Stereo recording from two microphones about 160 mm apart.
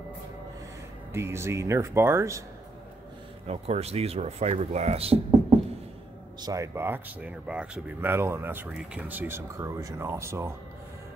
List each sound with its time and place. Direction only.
1.1 s speech: 15° right (ahead or behind)
3.4 s speech: 40° right (ahead or behind)
6.4 s speech: 20° right (ahead or behind)